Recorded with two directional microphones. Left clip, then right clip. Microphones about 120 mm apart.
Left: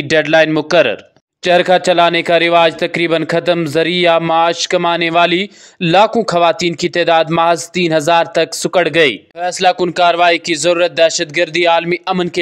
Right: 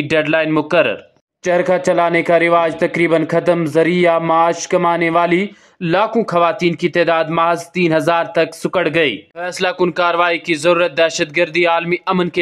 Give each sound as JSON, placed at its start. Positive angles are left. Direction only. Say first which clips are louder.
{"t": 0.1, "sound": "speech", "louder": "left 5 dB", "side_deg": 25}
{"t": 1.4, "sound": "a man's voice", "louder": "left 4 dB", "side_deg": 35}
{"t": 9.5, "sound": "a man's voice", "louder": "left 4 dB", "side_deg": 15}